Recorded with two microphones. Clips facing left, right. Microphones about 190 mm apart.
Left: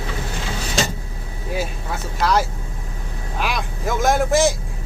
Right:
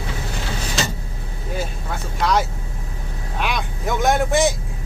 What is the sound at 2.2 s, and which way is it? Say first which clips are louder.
Speech: even; centre (ahead or behind).